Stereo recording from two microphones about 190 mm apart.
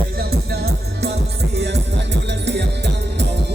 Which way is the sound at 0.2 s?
55° right (ahead or behind).